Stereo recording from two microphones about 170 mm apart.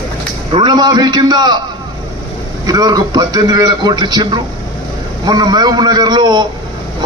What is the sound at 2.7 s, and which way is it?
Speech, 25° right (ahead or behind).